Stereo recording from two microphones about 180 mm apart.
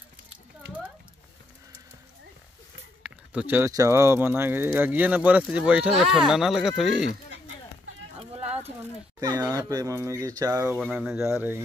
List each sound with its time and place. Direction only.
3.0 s speech: 10° right (ahead or behind)
9.2 s speech: 20° right (ahead or behind)
10.9 s speech: 5° right (ahead or behind)